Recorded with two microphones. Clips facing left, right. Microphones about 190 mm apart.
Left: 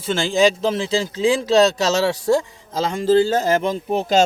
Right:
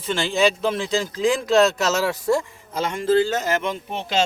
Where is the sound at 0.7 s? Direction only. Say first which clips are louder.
Left 2 dB; 30° left (ahead or behind).